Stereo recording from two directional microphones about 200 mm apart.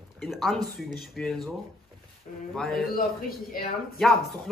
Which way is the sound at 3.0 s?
45° left (ahead or behind).